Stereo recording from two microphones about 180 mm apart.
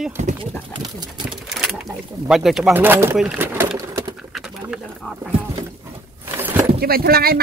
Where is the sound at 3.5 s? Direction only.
15° right (ahead or behind).